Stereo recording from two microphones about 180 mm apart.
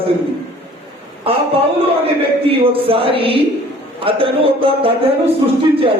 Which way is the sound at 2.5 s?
30° right (ahead or behind).